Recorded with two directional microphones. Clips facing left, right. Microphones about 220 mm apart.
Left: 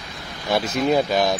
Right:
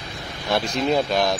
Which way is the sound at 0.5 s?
5° left (ahead or behind).